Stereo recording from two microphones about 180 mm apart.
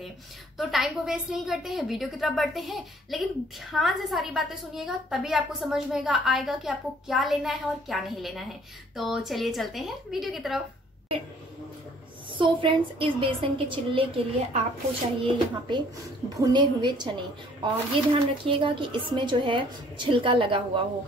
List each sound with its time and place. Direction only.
0.6 s a woman's voice: centre (ahead or behind)
12.4 s a woman's voice: 30° right (ahead or behind)